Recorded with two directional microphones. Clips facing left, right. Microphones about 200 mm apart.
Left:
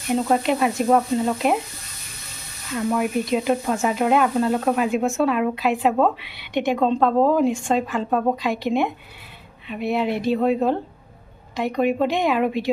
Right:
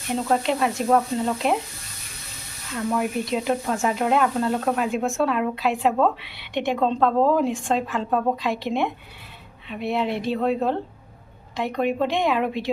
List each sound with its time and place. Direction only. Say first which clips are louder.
0.1 s speech: left 3 dB; 5° left (ahead or behind)
2.7 s speech: left 3 dB; 5° left (ahead or behind)